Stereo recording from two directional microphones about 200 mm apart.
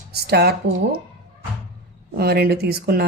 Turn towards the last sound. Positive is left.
turn(degrees=-50)  # may be behind; listen again after turning